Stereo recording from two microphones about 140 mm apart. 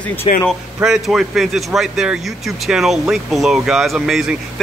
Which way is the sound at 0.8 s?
Centre (ahead or behind).